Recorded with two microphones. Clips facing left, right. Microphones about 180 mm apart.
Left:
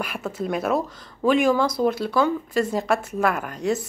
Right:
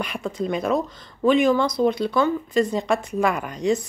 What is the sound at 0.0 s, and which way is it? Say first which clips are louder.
Speech: right 2 dB; 5° left (ahead or behind).